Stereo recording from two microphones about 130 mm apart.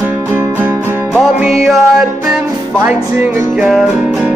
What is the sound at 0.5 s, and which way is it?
Music, 15° right (ahead or behind).